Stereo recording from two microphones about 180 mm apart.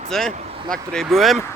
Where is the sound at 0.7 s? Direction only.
5° left (ahead or behind).